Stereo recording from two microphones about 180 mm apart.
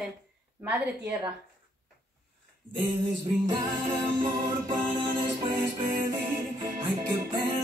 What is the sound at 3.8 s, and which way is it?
Music, 15° right (ahead or behind).